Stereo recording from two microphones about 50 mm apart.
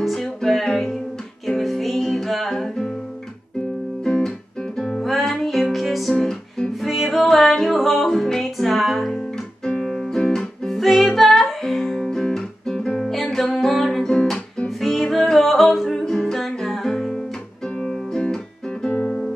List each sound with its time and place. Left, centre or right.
0.0 s music: centre
4.0 s music: centre
13.0 s music: centre
16.0 s music: centre
18.2 s music: centre
18.9 s guitar: centre